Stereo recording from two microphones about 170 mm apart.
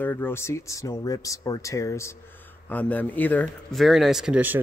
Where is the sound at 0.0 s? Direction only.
10° left (ahead or behind).